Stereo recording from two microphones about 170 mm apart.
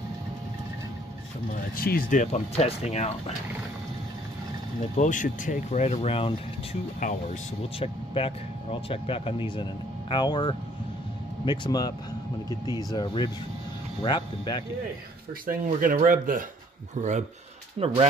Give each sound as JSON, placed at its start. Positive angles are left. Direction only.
{"t": 1.8, "sound": "speech", "side_deg": 60}
{"t": 4.9, "sound": "speech", "side_deg": 50}
{"t": 7.0, "sound": "speech", "side_deg": 50}
{"t": 7.8, "sound": "speech", "side_deg": 35}
{"t": 15.4, "sound": "speech", "side_deg": -55}
{"t": 17.7, "sound": "speech", "side_deg": -35}